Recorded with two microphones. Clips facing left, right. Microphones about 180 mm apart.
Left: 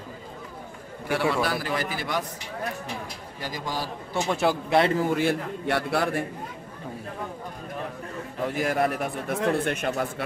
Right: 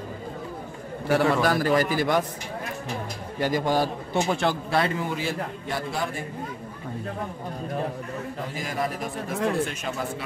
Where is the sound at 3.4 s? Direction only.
60° right (ahead or behind).